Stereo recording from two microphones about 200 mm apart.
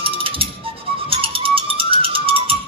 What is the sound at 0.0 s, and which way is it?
Music, 25° right (ahead or behind).